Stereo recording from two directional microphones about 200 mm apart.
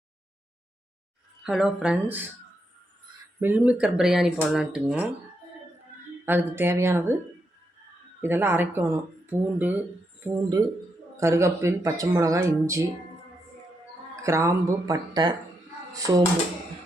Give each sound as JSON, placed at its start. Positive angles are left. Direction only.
{"t": 1.5, "sound": "speech", "side_deg": -5}
{"t": 3.4, "sound": "speech", "side_deg": -10}
{"t": 6.2, "sound": "speech", "side_deg": -10}
{"t": 8.2, "sound": "speech", "side_deg": -10}
{"t": 14.2, "sound": "speech", "side_deg": -15}